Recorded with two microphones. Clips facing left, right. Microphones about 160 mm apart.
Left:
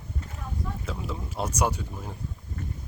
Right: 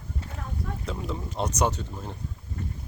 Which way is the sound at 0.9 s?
Centre (ahead or behind).